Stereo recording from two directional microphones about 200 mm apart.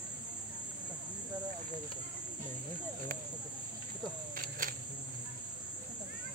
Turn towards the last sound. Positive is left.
turn(degrees=-45)  # may be behind; listen again after turning